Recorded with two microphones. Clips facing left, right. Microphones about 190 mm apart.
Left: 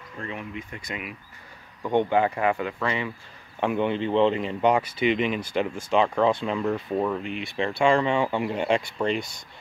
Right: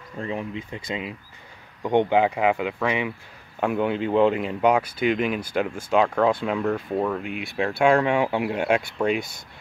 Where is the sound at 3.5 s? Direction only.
5° right (ahead or behind).